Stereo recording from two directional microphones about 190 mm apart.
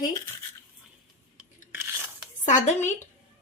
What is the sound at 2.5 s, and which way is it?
Speech, 40° left (ahead or behind).